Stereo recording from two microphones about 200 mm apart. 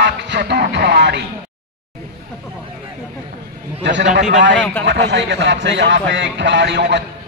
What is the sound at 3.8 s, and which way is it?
Speech, 65° right (ahead or behind).